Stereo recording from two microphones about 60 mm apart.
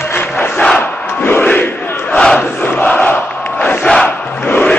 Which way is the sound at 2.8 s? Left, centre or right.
Left.